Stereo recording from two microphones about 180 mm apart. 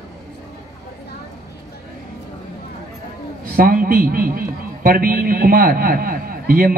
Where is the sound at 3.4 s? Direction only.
55° right (ahead or behind).